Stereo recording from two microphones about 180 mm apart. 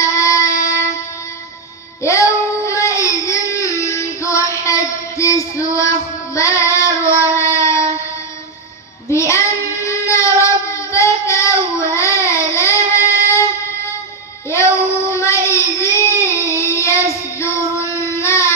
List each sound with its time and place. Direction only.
0.0 s music: 15° left (ahead or behind)
2.0 s child singing: 15° left (ahead or behind)
9.1 s child singing: 15° left (ahead or behind)
14.5 s child singing: 15° left (ahead or behind)